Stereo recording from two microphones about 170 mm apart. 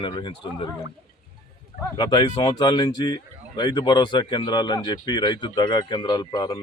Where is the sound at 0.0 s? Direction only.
30° left (ahead or behind).